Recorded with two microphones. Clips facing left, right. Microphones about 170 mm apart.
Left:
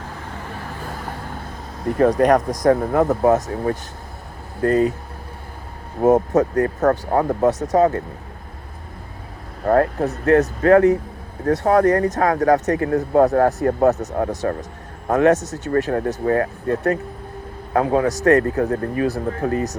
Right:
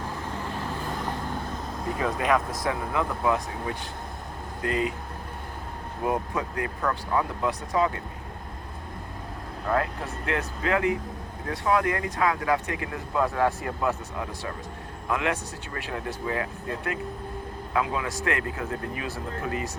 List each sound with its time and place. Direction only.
0.4 s vehicle: 10° left (ahead or behind)
2.0 s speech: 45° left (ahead or behind)
6.0 s speech: 45° left (ahead or behind)
9.6 s speech: 45° left (ahead or behind)